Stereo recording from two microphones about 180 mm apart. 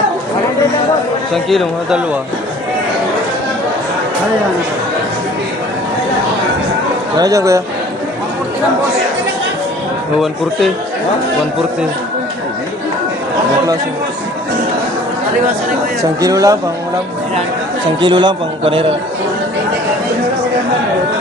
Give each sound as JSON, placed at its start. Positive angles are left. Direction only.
{"t": 1.5, "sound": "speech", "side_deg": 0}
{"t": 7.2, "sound": "speech", "side_deg": -20}
{"t": 16.2, "sound": "a man's voice", "side_deg": -20}
{"t": 18.0, "sound": "a man's voice", "side_deg": -25}